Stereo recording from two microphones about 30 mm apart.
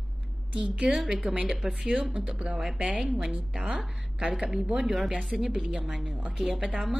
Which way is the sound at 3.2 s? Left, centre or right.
Centre.